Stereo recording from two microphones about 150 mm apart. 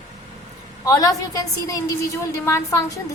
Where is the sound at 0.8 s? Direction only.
20° left (ahead or behind).